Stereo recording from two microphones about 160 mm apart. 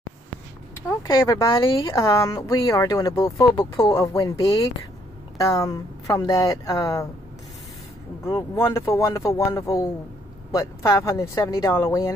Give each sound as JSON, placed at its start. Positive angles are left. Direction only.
{"t": 1.0, "sound": "speech", "side_deg": 20}
{"t": 5.4, "sound": "speech", "side_deg": 20}
{"t": 8.3, "sound": "speech", "side_deg": 15}